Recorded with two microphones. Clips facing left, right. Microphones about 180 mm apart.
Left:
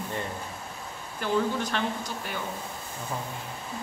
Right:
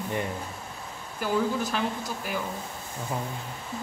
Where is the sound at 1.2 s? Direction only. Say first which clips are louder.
Even; 5° right (ahead or behind).